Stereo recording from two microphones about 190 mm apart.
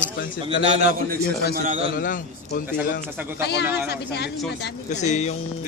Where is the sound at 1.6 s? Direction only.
40° right (ahead or behind).